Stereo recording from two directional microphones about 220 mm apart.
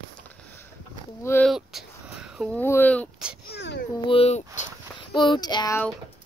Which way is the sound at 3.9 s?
25° left (ahead or behind).